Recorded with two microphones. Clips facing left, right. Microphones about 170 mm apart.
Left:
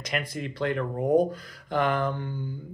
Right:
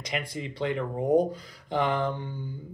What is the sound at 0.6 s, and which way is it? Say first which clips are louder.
Speech: left 1 dB; 20° right (ahead or behind).